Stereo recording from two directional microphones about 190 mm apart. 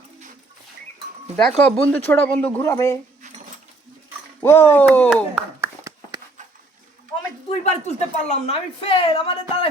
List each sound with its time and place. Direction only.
1.5 s speech: 5° left (ahead or behind)
4.4 s speech: 10° left (ahead or behind)
5.0 s speech: 5° right (ahead or behind)
7.6 s speech: 35° left (ahead or behind)